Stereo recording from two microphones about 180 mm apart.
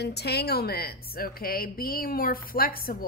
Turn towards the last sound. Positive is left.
turn(degrees=55)  # may be behind; listen again after turning